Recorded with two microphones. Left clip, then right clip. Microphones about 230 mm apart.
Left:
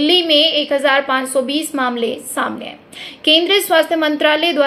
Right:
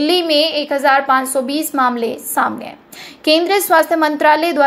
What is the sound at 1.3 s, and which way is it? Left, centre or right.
Speech, right.